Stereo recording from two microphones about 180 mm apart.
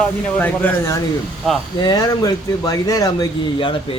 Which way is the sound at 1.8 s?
20° left (ahead or behind).